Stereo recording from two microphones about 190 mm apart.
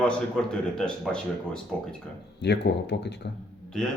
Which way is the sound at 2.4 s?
65° left (ahead or behind).